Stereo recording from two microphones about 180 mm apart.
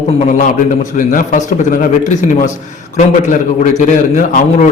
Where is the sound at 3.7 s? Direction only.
45° left (ahead or behind).